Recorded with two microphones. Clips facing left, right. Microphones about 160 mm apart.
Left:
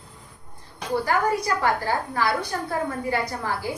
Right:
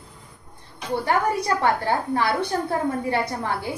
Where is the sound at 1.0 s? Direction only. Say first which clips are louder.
Right 1 dB; 25° right (ahead or behind).